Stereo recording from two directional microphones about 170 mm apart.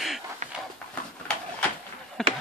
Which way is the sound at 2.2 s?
5° left (ahead or behind).